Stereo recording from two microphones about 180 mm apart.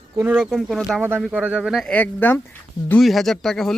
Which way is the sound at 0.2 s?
5° right (ahead or behind).